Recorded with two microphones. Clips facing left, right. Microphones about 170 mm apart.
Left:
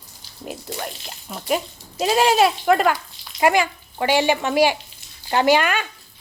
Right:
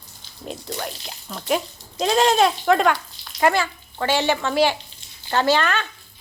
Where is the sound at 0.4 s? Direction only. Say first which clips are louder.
Even; 5° left (ahead or behind).